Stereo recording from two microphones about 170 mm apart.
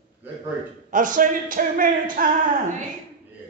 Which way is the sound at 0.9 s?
50° right (ahead or behind).